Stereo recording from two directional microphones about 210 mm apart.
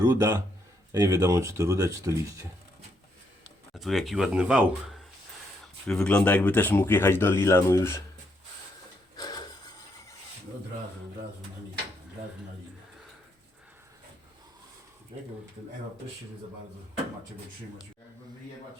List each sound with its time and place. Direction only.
0.0 s speech: 15° right (ahead or behind)
3.8 s speech: centre (ahead or behind)
9.1 s a sound: 20° left (ahead or behind)